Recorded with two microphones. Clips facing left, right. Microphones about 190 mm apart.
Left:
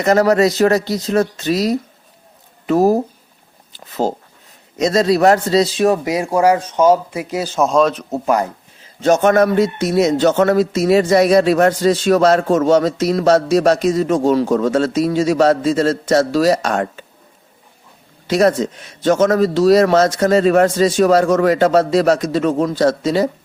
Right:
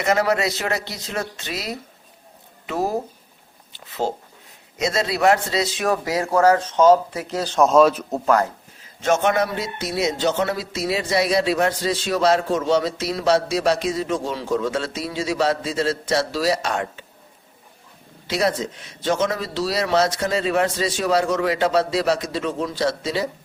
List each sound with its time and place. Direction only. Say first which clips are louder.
0.0 s a man's voice: left 7 dB; 40° left (ahead or behind); by 8.2 s 5° right (ahead or behind)
8.2 s a man's voice: left 2 dB; 15° left (ahead or behind)
9.0 s a man's voice: left 7 dB; 40° left (ahead or behind)
18.3 s a man's voice: left 8 dB; 45° left (ahead or behind)